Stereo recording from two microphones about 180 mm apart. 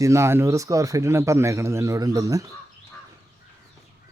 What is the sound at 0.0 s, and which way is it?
A man's voice, 15° right (ahead or behind).